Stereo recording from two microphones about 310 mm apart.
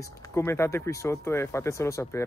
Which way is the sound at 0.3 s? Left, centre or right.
Centre.